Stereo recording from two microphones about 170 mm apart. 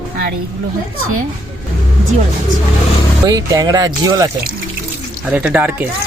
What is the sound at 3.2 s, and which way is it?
Speech, 20° right (ahead or behind).